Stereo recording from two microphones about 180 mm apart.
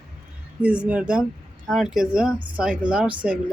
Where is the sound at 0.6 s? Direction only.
5° right (ahead or behind).